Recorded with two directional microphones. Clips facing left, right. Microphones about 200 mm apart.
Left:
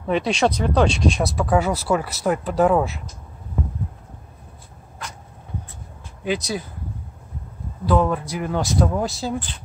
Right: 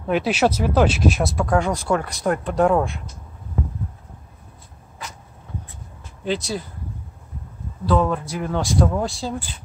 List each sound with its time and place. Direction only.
0.0 s speech: 5° right (ahead or behind)
6.2 s speech: 15° left (ahead or behind)
7.9 s speech: 5° left (ahead or behind)